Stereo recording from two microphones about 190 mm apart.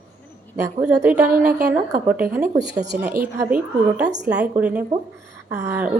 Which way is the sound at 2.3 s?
10° right (ahead or behind).